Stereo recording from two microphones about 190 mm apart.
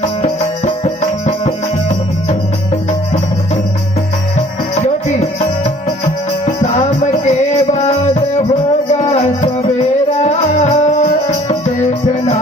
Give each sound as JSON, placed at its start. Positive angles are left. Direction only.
{"t": 0.8, "sound": "music", "side_deg": 40}
{"t": 4.7, "sound": "music", "side_deg": 35}
{"t": 6.4, "sound": "music", "side_deg": 40}
{"t": 8.9, "sound": "music", "side_deg": 40}